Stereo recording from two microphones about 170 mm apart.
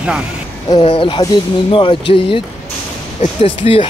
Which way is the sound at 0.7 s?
30° left (ahead or behind).